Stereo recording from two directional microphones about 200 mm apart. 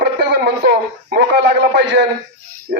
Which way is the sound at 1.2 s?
55° right (ahead or behind).